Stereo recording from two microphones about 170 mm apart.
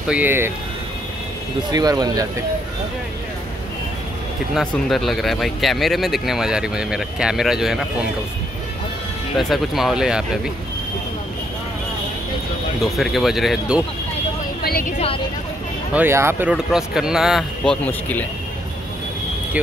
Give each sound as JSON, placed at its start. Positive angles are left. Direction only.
{"t": 0.1, "sound": "speech", "side_deg": -10}
{"t": 1.7, "sound": "speech", "side_deg": -20}
{"t": 4.6, "sound": "speech", "side_deg": 0}
{"t": 9.4, "sound": "speech", "side_deg": 0}
{"t": 12.8, "sound": "speech", "side_deg": 0}
{"t": 14.6, "sound": "a sound", "side_deg": 60}
{"t": 15.9, "sound": "speech", "side_deg": -10}
{"t": 17.8, "sound": "speech", "side_deg": 10}